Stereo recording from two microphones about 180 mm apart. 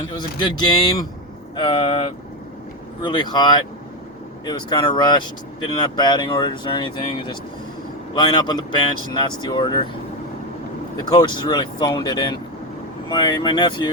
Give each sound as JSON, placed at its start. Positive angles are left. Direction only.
{"t": 0.1, "sound": "speech", "side_deg": 25}
{"t": 3.0, "sound": "speech", "side_deg": 25}
{"t": 11.1, "sound": "speech", "side_deg": 20}